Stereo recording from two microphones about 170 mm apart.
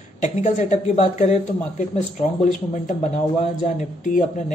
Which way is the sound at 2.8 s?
45° left (ahead or behind).